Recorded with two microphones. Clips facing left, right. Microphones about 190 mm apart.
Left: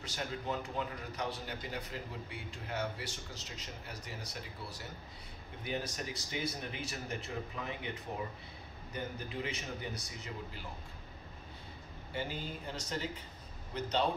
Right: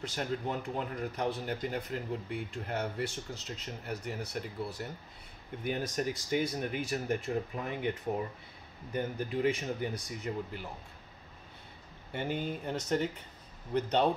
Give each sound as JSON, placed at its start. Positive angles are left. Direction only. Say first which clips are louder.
{"t": 0.0, "sound": "a man's voice", "louder": "right 6 dB", "side_deg": -55}
{"t": 8.9, "sound": "speech", "louder": "right 7 dB", "side_deg": -50}
{"t": 12.1, "sound": "a man's voice", "louder": "right 5 dB", "side_deg": -55}